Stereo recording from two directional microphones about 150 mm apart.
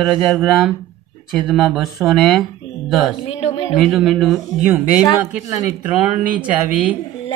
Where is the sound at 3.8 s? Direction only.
Centre (ahead or behind).